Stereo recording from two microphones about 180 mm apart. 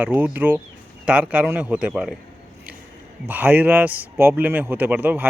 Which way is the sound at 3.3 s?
10° right (ahead or behind).